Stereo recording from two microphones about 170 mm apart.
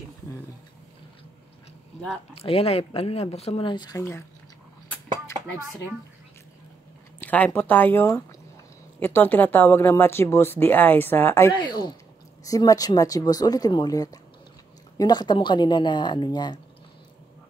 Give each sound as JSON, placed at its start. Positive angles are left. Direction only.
{"t": 2.3, "sound": "speech", "side_deg": 35}
{"t": 7.2, "sound": "speech", "side_deg": 10}
{"t": 11.6, "sound": "speech", "side_deg": 25}